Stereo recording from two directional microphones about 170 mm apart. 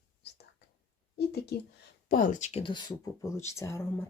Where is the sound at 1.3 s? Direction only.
70° left (ahead or behind).